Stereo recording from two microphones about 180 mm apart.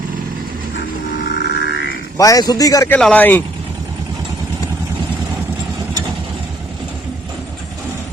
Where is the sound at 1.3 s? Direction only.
70° left (ahead or behind).